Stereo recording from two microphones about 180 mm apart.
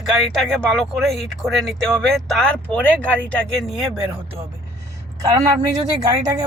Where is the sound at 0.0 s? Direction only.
Centre (ahead or behind).